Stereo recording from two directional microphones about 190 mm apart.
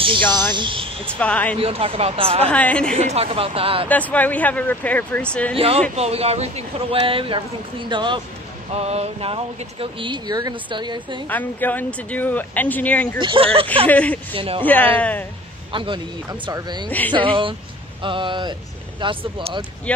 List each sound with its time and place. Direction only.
0.5 s speech: 25° right (ahead or behind)
1.0 s speech: 5° left (ahead or behind)
1.6 s speech: 30° right (ahead or behind)
2.4 s speech: 5° left (ahead or behind)
3.0 s speech: 35° right (ahead or behind)
3.9 s speech: 10° left (ahead or behind)
5.9 s speech: 35° right (ahead or behind)
11.2 s speech: 10° left (ahead or behind)
13.2 s speech: 25° right (ahead or behind)
13.8 s speech: 10° left (ahead or behind)
14.3 s speech: 30° right (ahead or behind)
14.7 s speech: 10° left (ahead or behind)
15.7 s speech: 25° right (ahead or behind)